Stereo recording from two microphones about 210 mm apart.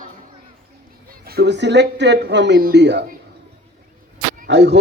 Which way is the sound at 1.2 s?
50° right (ahead or behind).